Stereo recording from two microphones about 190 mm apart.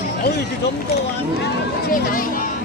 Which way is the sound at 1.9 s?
45° left (ahead or behind).